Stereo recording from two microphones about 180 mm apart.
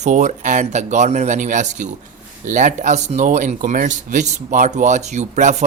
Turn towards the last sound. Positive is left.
turn(degrees=-40)  # may be behind; listen again after turning